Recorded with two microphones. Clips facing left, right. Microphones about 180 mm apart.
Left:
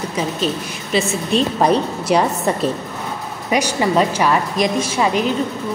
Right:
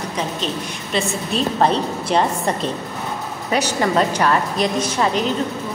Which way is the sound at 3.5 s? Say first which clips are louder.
Left 2 dB; 10° left (ahead or behind).